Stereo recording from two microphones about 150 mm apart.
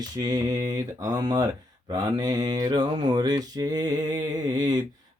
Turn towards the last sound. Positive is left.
turn(degrees=-25)  # may be behind; listen again after turning